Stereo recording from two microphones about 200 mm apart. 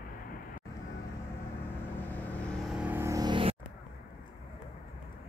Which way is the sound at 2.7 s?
10° right (ahead or behind).